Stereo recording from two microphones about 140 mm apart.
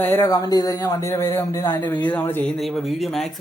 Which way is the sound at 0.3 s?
30° left (ahead or behind).